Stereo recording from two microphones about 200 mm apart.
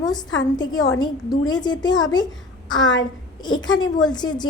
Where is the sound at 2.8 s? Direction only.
65° left (ahead or behind).